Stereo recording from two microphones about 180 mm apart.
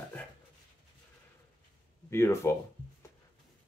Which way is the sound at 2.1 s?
15° left (ahead or behind).